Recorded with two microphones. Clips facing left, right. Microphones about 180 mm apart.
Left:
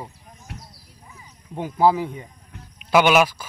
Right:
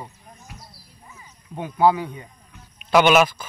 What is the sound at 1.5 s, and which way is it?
Speech, 5° left (ahead or behind).